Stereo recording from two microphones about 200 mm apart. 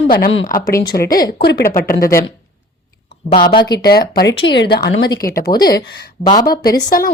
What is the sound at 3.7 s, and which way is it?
A woman's voice, 50° left (ahead or behind).